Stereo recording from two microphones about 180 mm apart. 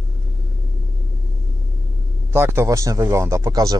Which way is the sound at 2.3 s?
10° right (ahead or behind).